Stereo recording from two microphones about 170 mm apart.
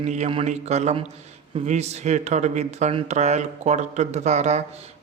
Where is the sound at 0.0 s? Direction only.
40° right (ahead or behind).